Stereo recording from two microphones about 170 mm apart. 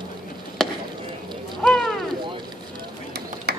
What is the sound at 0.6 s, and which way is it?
Chop, centre (ahead or behind).